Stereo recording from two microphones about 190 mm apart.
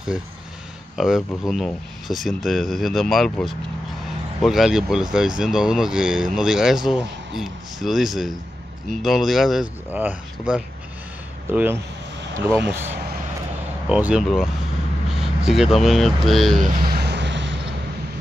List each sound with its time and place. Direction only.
0.9 s speech: centre (ahead or behind)
13.8 s speech: 5° right (ahead or behind)
16.7 s vehicle: 50° right (ahead or behind); by 17.6 s 70° right (ahead or behind)